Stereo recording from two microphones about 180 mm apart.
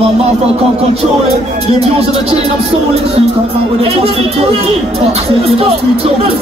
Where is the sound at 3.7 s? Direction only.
35° right (ahead or behind).